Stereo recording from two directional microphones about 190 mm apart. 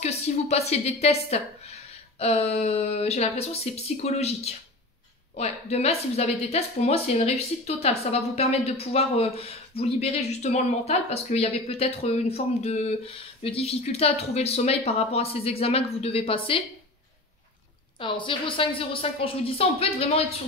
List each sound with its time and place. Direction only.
0.0 s a woman's voice: 35° left (ahead or behind)
17.9 s a woman's voice: 25° left (ahead or behind)